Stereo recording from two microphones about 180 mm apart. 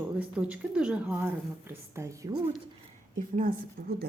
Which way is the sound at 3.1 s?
50° right (ahead or behind).